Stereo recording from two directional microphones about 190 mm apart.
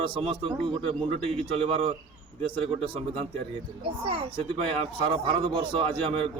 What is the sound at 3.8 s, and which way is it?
A man's voice, 30° right (ahead or behind).